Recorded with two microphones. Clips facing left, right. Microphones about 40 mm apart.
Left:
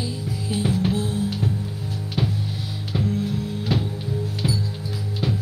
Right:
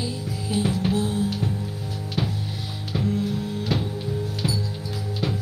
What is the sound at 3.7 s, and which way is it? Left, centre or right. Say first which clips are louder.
Music: left 2 dB; centre.